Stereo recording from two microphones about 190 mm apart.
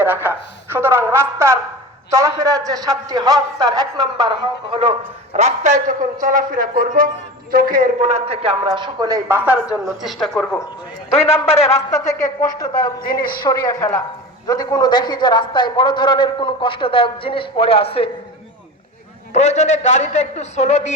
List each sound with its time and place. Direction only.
0.0 s a man's voice: 10° right (ahead or behind)
11.1 s a man's voice: 30° left (ahead or behind)
11.9 s a woman's voice: 15° left (ahead or behind)
19.3 s a man's voice: 35° left (ahead or behind)